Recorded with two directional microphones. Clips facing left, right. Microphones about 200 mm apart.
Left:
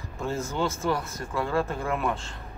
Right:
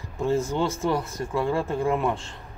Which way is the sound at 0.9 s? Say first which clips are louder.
Right 3 dB; 25° right (ahead or behind).